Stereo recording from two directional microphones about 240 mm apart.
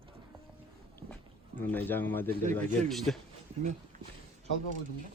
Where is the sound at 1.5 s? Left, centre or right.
Centre.